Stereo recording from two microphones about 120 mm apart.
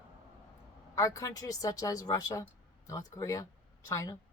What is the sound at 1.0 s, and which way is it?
A woman's voice, 25° left (ahead or behind).